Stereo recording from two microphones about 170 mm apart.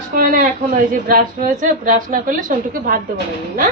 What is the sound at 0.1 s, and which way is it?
A woman's voice, 55° right (ahead or behind).